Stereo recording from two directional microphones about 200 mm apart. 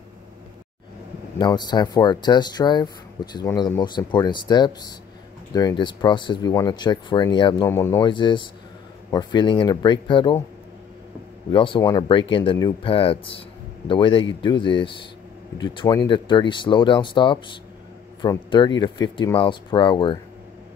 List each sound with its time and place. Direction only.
1.4 s speech: 20° left (ahead or behind)
7.6 s speech: 10° left (ahead or behind)
8.0 s speech: 25° left (ahead or behind)
11.5 s speech: 25° left (ahead or behind)